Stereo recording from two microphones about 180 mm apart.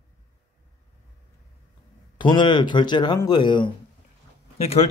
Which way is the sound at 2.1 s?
25° left (ahead or behind).